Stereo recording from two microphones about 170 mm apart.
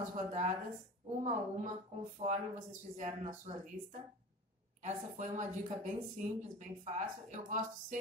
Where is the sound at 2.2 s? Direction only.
45° right (ahead or behind).